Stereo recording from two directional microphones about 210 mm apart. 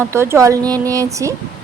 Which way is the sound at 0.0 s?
10° right (ahead or behind).